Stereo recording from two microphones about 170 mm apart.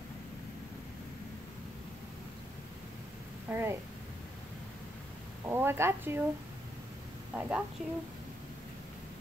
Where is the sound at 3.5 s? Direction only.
15° right (ahead or behind).